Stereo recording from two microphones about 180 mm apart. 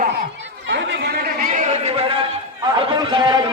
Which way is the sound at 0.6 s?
85° right.